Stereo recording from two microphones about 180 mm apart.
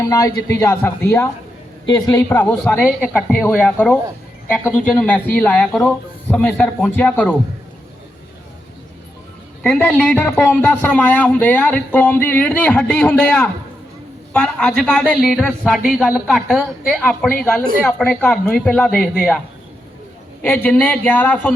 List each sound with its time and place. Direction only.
0.0 s a man's voice: 15° left (ahead or behind)
2.4 s a man's voice: 10° left (ahead or behind)
9.6 s a man's voice: 5° left (ahead or behind)
20.4 s a man's voice: 10° left (ahead or behind)